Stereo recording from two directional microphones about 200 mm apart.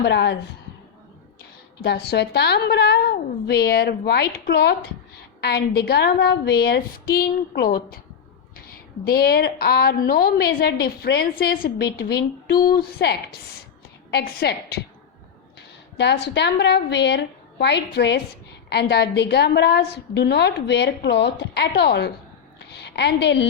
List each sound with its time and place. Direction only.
0.0 s a woman's voice: 60° left (ahead or behind)
1.8 s a woman's voice: 55° left (ahead or behind)
9.0 s a woman's voice: 50° left (ahead or behind)
16.0 s a woman's voice: 60° left (ahead or behind)